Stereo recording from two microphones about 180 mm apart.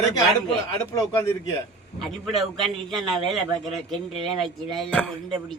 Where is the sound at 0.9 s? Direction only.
20° left (ahead or behind).